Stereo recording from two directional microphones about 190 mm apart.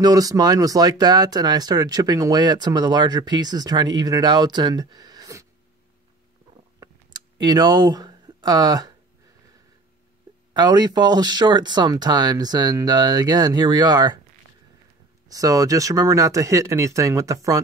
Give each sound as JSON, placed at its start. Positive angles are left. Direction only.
{"t": 0.0, "sound": "speech", "side_deg": -20}
{"t": 6.8, "sound": "a sound", "side_deg": -20}
{"t": 10.5, "sound": "speech", "side_deg": -20}
{"t": 15.2, "sound": "speech", "side_deg": -20}